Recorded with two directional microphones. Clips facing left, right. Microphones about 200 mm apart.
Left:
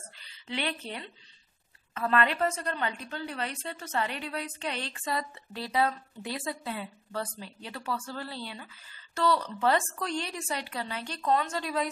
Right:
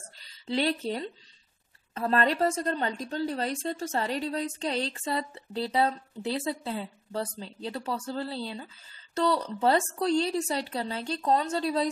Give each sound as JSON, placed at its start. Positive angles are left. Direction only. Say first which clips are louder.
{"t": 0.5, "sound": "a woman's voice", "louder": "right 7 dB", "side_deg": -35}